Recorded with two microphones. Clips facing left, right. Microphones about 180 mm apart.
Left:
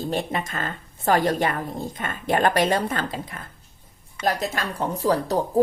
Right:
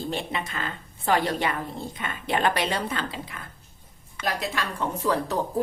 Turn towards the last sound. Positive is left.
turn(degrees=35)  # may be behind; listen again after turning